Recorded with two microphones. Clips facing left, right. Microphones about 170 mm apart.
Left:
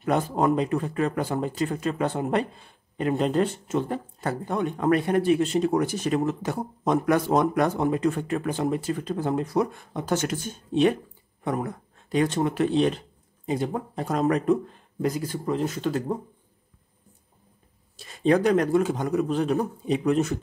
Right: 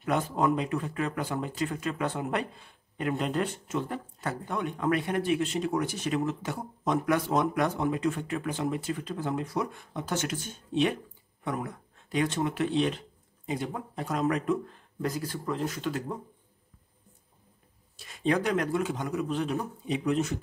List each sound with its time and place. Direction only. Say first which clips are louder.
0.0 s speech: left 4 dB; 40° left (ahead or behind)
15.0 s speech: left 5 dB; 20° left (ahead or behind)
15.8 s speech: left 6 dB; 35° left (ahead or behind)
17.9 s speech: left 6 dB; 35° left (ahead or behind)